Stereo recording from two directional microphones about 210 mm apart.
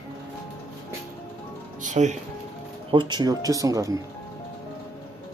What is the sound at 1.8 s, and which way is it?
Music, 35° right (ahead or behind).